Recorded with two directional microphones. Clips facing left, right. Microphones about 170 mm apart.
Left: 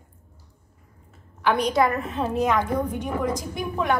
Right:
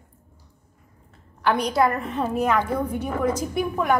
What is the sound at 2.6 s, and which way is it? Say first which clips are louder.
Speech: even; 15° left (ahead or behind).